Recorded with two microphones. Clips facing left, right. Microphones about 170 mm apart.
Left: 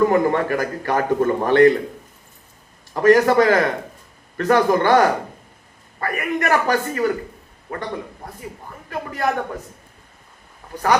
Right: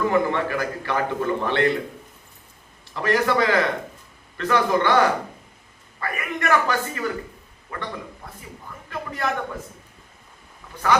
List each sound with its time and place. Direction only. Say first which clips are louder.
0.1 s a man's voice: left 4 dB; 45° left (ahead or behind)
2.9 s a man's voice: left 8 dB; 45° left (ahead or behind)